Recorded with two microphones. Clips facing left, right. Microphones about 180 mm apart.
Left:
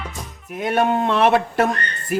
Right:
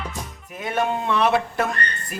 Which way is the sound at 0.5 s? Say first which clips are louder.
Left 5 dB; 65° left (ahead or behind).